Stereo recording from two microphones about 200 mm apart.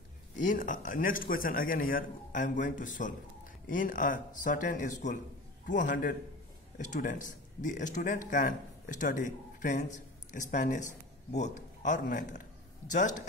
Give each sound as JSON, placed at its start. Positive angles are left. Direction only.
{"t": 0.4, "sound": "a man's voice", "side_deg": 40}